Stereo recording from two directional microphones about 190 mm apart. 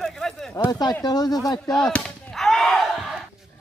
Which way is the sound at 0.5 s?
20° left (ahead or behind).